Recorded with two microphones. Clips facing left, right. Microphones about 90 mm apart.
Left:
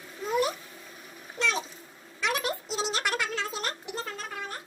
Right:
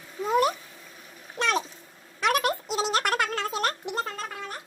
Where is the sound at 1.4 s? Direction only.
60° right (ahead or behind).